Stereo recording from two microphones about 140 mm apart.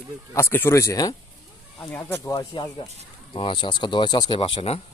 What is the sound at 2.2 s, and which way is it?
Speech, 25° left (ahead or behind).